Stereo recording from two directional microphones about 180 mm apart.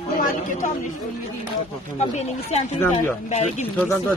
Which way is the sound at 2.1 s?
40° left (ahead or behind).